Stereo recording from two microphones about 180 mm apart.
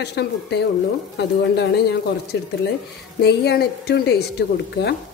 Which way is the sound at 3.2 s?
65° left (ahead or behind).